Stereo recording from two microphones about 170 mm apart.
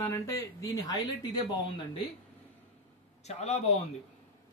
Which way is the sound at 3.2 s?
40° left (ahead or behind).